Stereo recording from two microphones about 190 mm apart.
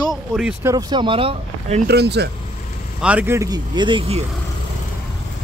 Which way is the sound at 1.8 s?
60° right (ahead or behind).